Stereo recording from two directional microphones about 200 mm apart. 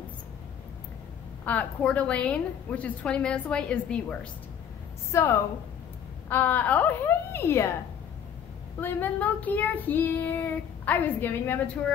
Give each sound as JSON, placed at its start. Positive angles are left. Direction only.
{"t": 1.4, "sound": "child singing", "side_deg": 10}
{"t": 6.2, "sound": "a woman's voice", "side_deg": 10}
{"t": 8.8, "sound": "child singing", "side_deg": 10}